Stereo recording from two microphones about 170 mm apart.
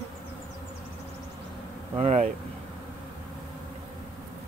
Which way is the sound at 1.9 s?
35° right (ahead or behind).